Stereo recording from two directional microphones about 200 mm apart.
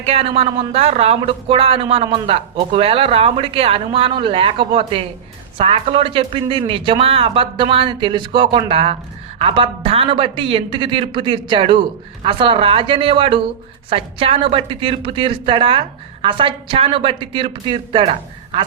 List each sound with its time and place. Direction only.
0.0 s speech: 30° right (ahead or behind)